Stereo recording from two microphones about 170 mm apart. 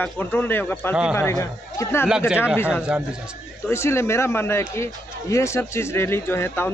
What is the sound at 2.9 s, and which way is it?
Speech, 5° right (ahead or behind).